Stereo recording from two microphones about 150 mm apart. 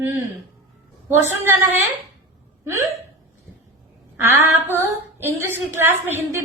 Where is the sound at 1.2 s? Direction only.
15° right (ahead or behind).